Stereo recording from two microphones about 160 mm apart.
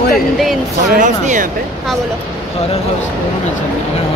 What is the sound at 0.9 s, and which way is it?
Speech, 55° right (ahead or behind).